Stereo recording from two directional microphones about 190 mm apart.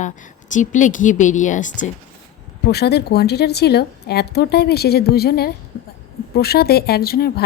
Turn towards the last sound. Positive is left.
turn(degrees=55)  # may be behind; listen again after turning